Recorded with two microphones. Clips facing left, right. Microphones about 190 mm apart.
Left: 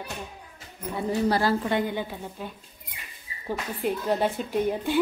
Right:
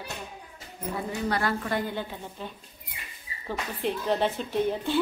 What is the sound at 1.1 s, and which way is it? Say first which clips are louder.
Speech: left 6 dB; 35° left (ahead or behind).